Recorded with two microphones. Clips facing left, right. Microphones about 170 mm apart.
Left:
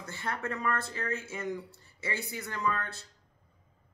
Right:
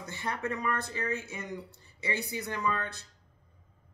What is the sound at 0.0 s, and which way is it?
Speech, 15° right (ahead or behind).